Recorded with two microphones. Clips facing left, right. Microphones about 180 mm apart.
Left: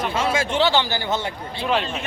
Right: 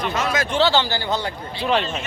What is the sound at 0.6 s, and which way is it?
Speech, 20° left (ahead or behind).